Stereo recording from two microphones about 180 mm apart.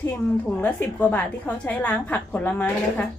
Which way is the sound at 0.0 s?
10° left (ahead or behind).